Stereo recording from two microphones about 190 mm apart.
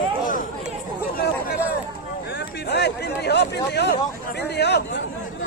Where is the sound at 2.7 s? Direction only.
60° left (ahead or behind).